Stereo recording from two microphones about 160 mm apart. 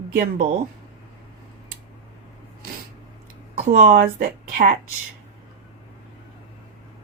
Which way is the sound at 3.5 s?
55° right (ahead or behind).